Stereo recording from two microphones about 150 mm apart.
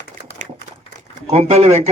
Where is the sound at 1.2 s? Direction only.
45° right (ahead or behind).